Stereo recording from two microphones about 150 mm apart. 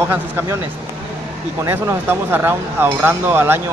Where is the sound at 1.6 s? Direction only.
15° right (ahead or behind).